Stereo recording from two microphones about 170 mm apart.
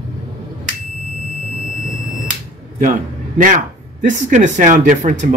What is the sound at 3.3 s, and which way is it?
Speech, 50° right (ahead or behind).